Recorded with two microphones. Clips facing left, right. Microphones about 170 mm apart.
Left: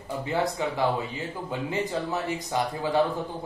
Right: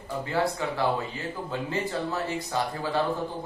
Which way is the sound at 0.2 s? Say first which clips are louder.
Even; 20° left (ahead or behind).